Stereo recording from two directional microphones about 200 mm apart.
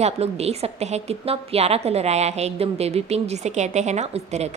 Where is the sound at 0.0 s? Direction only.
30° right (ahead or behind).